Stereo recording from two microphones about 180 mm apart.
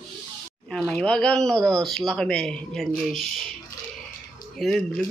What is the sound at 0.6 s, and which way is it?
Speech, 5° left (ahead or behind).